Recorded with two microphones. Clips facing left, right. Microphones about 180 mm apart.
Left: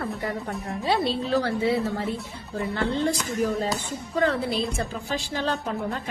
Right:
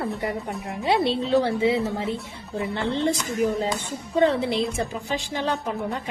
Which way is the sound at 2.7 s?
25° right (ahead or behind).